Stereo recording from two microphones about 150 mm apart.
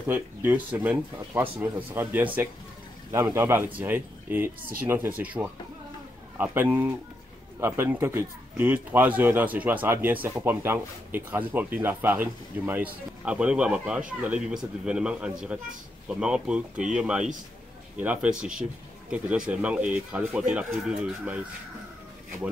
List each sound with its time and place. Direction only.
0.0 s speech: 10° right (ahead or behind)